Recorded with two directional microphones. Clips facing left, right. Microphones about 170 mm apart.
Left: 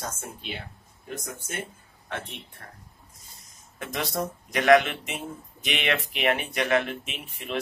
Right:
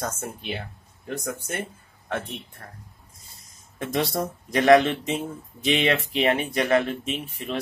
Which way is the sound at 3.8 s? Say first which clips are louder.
Right 4 dB; 30° right (ahead or behind).